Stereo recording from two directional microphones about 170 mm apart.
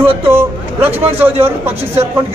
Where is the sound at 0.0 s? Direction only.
10° right (ahead or behind).